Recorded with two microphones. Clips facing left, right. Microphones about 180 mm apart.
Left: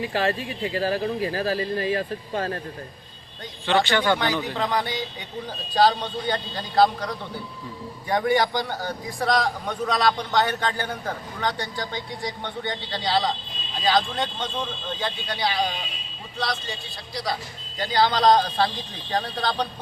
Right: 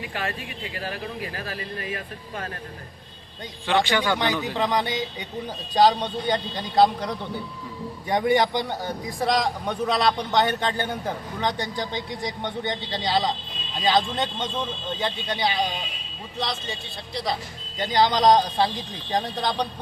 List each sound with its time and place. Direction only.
0.0 s speech: 30° left (ahead or behind)
3.7 s a man's voice: 10° right (ahead or behind)
4.5 s a man's voice: 15° right (ahead or behind)
17.7 s a man's voice: 20° right (ahead or behind)